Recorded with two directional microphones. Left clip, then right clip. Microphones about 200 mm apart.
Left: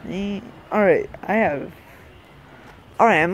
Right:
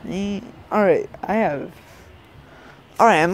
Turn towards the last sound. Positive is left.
turn(degrees=-15)  # may be behind; listen again after turning